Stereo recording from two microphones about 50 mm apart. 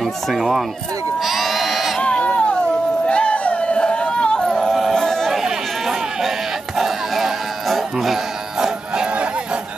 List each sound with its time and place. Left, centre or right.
0.0 s speech: centre
1.2 s sheep: centre
2.0 s sheep: left
3.1 s a sound: left
4.6 s yodeling: centre
5.3 s run: centre
6.8 s music: centre; by 9.6 s right